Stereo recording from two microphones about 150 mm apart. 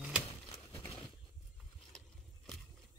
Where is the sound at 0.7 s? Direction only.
35° left (ahead or behind).